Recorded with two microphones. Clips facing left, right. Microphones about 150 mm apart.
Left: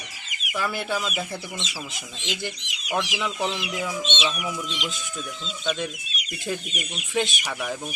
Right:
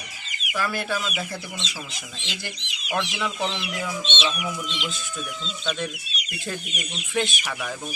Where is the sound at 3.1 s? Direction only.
5° left (ahead or behind).